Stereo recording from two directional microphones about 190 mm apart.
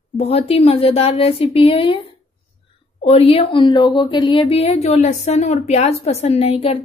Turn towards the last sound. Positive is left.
turn(degrees=35)  # may be behind; listen again after turning